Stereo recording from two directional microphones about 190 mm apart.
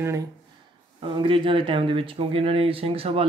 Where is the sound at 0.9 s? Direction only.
30° right (ahead or behind).